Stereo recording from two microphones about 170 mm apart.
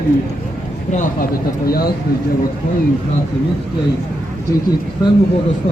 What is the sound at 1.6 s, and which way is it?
Speech, 60° left (ahead or behind).